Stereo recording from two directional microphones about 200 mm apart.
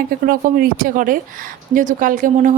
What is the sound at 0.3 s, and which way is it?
A woman's voice, 45° right (ahead or behind).